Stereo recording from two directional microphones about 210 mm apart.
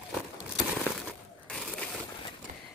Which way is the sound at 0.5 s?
Centre (ahead or behind).